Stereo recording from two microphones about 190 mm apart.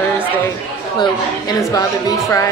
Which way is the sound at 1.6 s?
20° left (ahead or behind).